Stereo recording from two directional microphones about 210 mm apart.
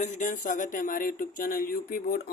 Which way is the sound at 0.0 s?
35° left (ahead or behind).